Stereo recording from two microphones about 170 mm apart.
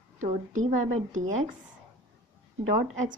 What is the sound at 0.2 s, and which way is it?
A woman's voice, 45° right (ahead or behind).